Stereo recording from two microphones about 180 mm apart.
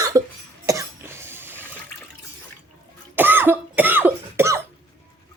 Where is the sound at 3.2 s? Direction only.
10° right (ahead or behind).